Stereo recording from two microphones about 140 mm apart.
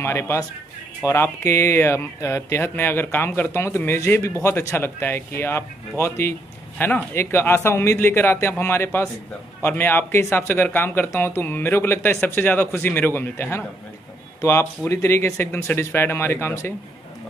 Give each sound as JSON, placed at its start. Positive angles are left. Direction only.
{"t": 0.0, "sound": "a man's voice", "side_deg": 15}